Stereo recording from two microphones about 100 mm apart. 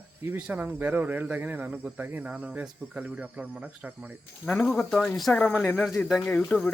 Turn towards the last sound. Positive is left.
turn(degrees=5)  # may be behind; listen again after turning